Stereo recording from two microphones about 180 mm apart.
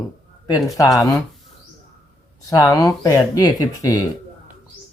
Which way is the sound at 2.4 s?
20° left (ahead or behind).